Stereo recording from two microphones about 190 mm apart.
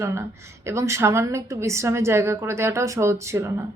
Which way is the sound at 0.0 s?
15° right (ahead or behind).